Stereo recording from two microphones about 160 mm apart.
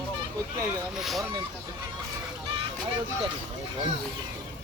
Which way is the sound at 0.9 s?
Centre (ahead or behind).